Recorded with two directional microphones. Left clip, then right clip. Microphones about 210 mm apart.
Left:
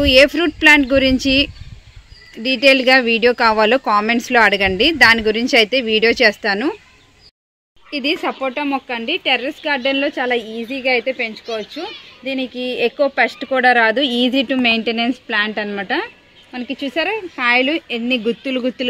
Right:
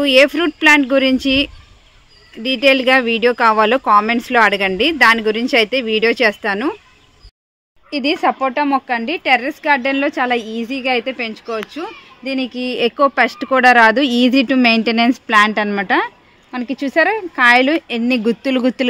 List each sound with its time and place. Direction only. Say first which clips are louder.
0.0 s speech: even; 5° right (ahead or behind)
7.9 s a woman's voice: right 4 dB; 55° right (ahead or behind)